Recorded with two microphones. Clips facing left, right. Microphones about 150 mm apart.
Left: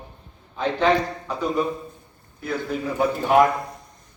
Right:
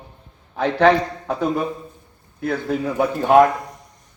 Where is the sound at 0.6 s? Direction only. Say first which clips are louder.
Right 4 dB; 65° right (ahead or behind).